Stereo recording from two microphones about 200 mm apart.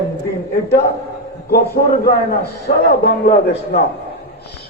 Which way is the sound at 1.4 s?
50° left (ahead or behind).